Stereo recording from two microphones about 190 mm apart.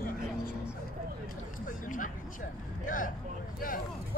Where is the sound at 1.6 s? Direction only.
45° left (ahead or behind).